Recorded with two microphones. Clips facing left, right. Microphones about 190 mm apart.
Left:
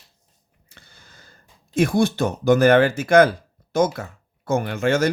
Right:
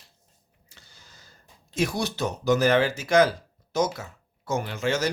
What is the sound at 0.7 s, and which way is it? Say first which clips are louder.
Speech: left 4 dB; 55° left (ahead or behind).